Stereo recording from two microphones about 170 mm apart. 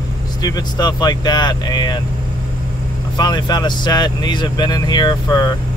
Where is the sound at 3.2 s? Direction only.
25° left (ahead or behind).